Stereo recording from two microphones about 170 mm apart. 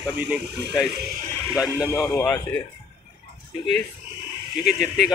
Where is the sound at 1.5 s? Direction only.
5° right (ahead or behind).